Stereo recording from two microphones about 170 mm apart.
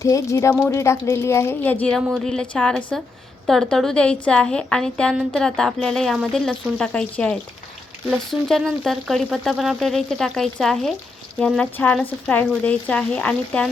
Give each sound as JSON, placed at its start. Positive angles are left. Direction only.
{"t": 0.0, "sound": "speech", "side_deg": 20}
{"t": 2.0, "sound": "a woman's voice", "side_deg": -5}